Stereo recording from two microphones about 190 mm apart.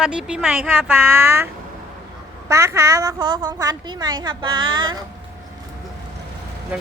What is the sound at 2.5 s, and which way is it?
A woman's voice, 15° right (ahead or behind).